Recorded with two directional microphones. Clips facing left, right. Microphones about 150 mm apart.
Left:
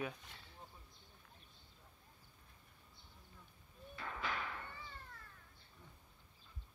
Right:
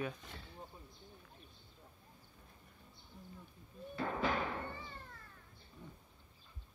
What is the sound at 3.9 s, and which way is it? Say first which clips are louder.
Music: right 8 dB; 40° right (ahead or behind).